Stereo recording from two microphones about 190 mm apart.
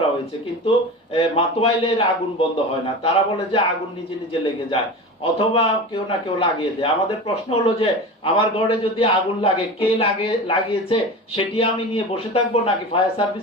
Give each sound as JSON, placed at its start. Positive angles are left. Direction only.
{"t": 0.6, "sound": "a man's voice", "side_deg": 30}